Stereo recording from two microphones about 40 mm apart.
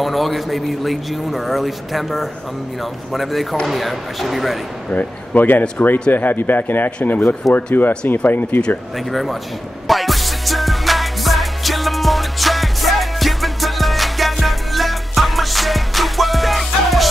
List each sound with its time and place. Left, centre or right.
0.0 s a man's voice: centre
4.8 s speech: left
8.9 s a man's voice: centre
9.8 s music: centre